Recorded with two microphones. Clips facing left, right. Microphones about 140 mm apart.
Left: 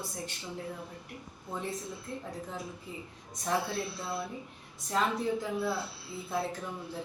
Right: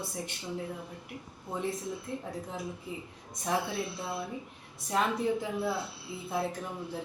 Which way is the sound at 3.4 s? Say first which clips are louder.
Even; 20° right (ahead or behind).